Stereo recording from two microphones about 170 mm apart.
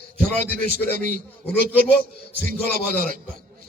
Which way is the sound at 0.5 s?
50° right (ahead or behind).